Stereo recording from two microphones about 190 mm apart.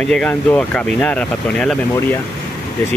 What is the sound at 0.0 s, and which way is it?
Speech, 5° left (ahead or behind).